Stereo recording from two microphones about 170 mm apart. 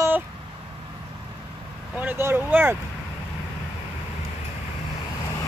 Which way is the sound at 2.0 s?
15° right (ahead or behind).